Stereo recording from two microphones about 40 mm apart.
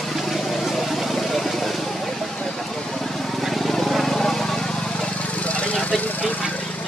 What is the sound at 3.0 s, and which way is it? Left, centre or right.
Vehicle, centre.